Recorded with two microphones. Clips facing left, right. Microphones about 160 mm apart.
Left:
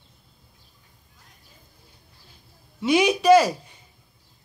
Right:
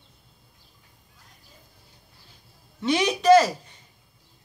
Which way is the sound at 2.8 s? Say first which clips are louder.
Left 4 dB; 10° left (ahead or behind).